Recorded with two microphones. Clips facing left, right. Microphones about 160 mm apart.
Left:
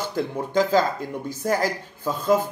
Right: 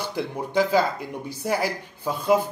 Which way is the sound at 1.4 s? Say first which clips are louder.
Left 2 dB; 10° right (ahead or behind).